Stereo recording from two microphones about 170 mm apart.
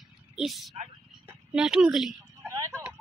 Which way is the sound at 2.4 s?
20° right (ahead or behind).